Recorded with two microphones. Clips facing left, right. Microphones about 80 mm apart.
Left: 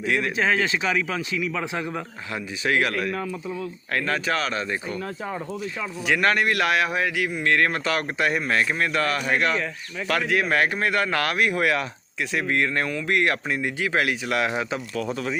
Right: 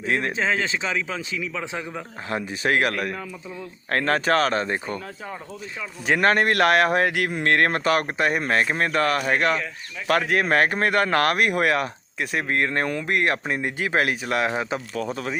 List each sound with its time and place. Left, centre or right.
0.0 s speech: right
0.3 s speech: centre
2.3 s speech: right
3.9 s speech: right
6.1 s speech: right
15.1 s speech: right